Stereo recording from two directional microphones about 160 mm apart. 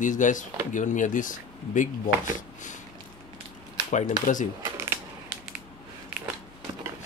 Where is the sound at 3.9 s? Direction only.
50° left (ahead or behind).